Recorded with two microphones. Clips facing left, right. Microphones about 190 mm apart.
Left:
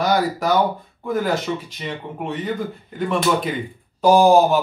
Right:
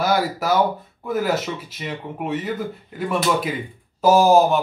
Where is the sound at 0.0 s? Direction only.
5° right (ahead or behind).